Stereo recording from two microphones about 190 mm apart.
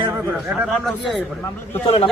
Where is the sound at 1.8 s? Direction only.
30° left (ahead or behind).